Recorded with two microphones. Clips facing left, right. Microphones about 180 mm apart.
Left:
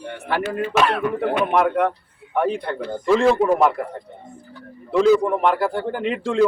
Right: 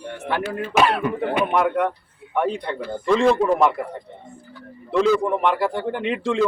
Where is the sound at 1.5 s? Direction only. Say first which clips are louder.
Left 2 dB; centre (ahead or behind).